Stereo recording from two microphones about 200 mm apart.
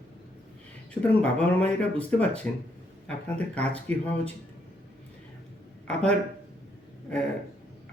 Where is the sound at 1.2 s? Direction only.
5° left (ahead or behind).